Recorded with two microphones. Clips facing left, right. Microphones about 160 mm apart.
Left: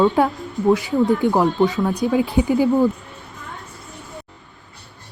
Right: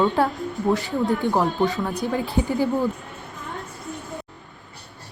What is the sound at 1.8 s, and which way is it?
Speech, 15° left (ahead or behind).